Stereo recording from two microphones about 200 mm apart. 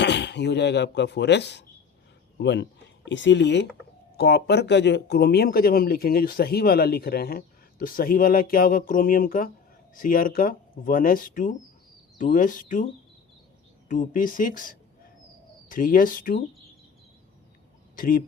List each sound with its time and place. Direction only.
0.0 s speech: 60° left (ahead or behind); by 16.4 s 45° left (ahead or behind)
17.9 s speech: 45° left (ahead or behind)